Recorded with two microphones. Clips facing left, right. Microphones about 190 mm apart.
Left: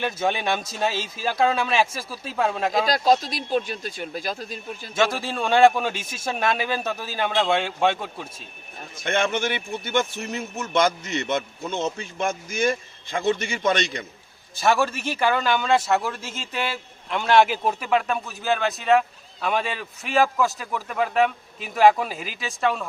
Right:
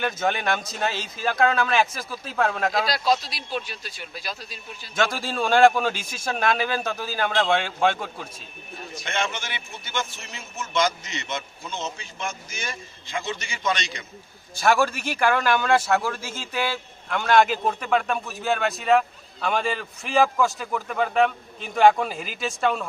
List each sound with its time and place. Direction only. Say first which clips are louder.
0.0 s a man's voice: left 1 dB; 5° left (ahead or behind)
2.8 s speech: left 4 dB; 45° left (ahead or behind)
4.9 s a man's voice: left 1 dB; centre (ahead or behind)
9.0 s speech: left 6 dB; 55° left (ahead or behind)
14.6 s a man's voice: even; centre (ahead or behind)